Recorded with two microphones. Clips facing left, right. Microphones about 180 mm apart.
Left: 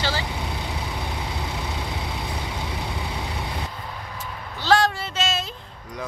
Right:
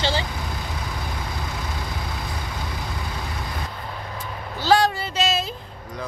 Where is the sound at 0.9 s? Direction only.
20° left (ahead or behind).